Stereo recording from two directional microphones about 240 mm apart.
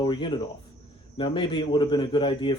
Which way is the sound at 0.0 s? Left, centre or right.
Centre.